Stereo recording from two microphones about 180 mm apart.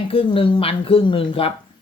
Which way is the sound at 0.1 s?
30° left (ahead or behind).